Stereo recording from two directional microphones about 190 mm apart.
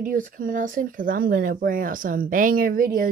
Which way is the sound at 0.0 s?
45° right (ahead or behind).